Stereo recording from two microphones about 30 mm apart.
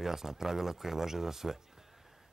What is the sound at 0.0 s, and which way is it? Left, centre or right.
Speech, centre.